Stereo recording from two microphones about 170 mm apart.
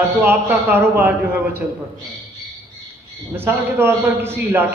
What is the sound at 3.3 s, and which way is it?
A man's voice, 15° right (ahead or behind).